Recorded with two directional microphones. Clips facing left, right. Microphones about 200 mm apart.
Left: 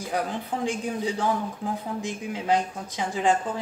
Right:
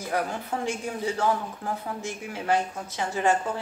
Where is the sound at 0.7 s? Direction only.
15° left (ahead or behind).